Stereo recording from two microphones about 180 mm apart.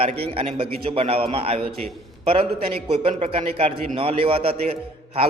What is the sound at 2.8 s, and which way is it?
A man's voice, 35° right (ahead or behind).